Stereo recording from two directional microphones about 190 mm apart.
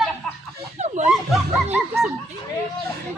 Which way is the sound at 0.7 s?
40° right (ahead or behind).